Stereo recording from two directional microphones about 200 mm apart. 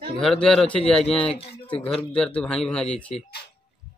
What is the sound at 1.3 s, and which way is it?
Speech, 30° left (ahead or behind).